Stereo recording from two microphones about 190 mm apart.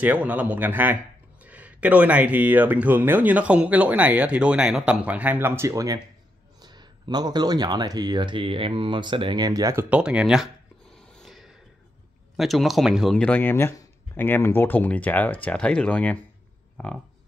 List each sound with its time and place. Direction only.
0.0 s speech: 10° right (ahead or behind)